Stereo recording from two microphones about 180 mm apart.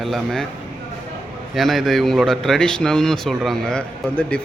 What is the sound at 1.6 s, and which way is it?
A man's voice, centre (ahead or behind).